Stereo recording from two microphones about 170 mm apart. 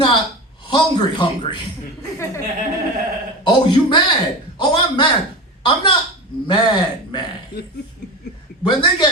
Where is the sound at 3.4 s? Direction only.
30° left (ahead or behind).